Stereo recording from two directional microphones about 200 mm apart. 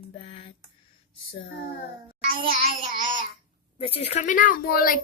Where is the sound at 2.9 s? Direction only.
40° right (ahead or behind).